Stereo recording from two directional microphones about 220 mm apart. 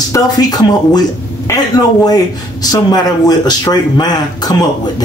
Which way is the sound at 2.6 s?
15° left (ahead or behind).